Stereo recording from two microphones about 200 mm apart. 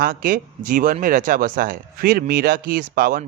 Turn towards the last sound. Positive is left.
turn(degrees=-45)  # may be behind; listen again after turning